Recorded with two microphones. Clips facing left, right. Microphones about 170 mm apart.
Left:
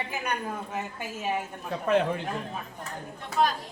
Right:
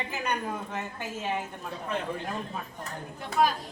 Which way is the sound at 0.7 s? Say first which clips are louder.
Left 1 dB; 10° left (ahead or behind).